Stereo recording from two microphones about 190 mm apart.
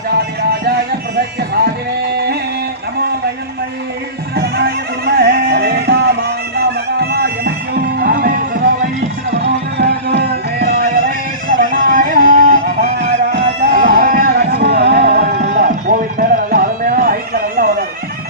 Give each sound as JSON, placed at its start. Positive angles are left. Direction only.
{"t": 0.1, "sound": "music", "side_deg": -55}
{"t": 4.4, "sound": "music", "side_deg": -55}
{"t": 7.1, "sound": "music", "side_deg": -60}
{"t": 9.3, "sound": "music", "side_deg": -65}
{"t": 15.2, "sound": "music", "side_deg": -40}